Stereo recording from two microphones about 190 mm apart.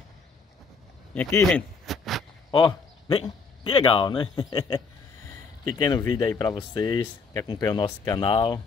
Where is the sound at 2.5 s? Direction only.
30° left (ahead or behind).